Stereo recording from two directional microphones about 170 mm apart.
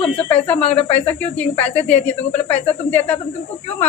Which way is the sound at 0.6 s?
35° left (ahead or behind).